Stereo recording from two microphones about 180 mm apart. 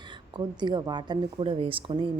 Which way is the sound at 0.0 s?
25° right (ahead or behind).